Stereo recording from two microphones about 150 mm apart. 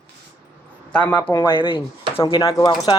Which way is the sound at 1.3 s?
20° left (ahead or behind).